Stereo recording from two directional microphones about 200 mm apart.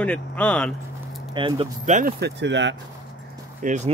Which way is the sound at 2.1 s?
60° right (ahead or behind).